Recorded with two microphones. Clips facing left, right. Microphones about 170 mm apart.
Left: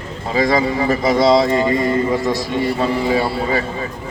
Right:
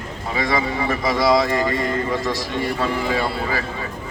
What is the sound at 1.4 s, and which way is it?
A man's voice, 20° left (ahead or behind).